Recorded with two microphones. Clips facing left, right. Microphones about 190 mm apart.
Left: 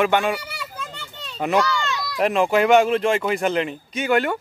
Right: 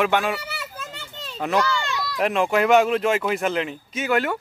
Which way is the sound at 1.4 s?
10° left (ahead or behind).